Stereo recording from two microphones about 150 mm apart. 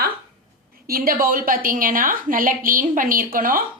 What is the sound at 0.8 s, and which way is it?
A woman's voice, 75° right (ahead or behind).